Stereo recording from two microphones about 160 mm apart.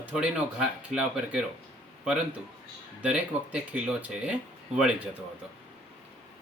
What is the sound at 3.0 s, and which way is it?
Speech, 5° right (ahead or behind).